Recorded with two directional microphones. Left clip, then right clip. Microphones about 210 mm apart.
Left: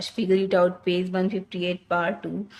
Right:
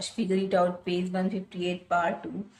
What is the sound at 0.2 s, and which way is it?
Speech, 55° left (ahead or behind).